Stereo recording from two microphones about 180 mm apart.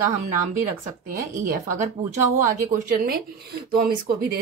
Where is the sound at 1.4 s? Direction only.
50° right (ahead or behind).